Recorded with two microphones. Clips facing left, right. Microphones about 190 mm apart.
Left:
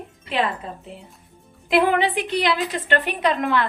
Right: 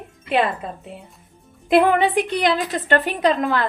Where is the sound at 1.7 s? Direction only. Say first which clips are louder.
Right 3 dB; 50° right (ahead or behind).